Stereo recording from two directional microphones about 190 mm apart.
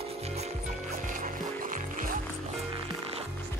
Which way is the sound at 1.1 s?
45° right (ahead or behind).